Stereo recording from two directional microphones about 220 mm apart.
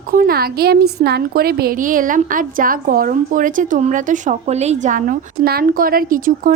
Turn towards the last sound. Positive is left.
turn(degrees=-40)  # may be behind; listen again after turning